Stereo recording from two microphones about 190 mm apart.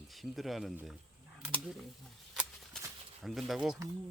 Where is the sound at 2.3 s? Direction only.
Centre (ahead or behind).